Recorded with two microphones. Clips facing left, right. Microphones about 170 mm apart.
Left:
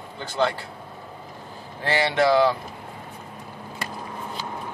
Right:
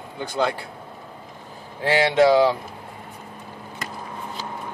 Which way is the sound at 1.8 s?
15° right (ahead or behind).